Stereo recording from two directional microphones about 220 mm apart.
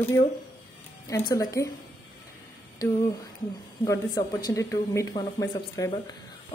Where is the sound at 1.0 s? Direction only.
15° left (ahead or behind).